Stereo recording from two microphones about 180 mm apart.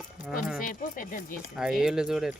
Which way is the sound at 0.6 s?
50° left (ahead or behind).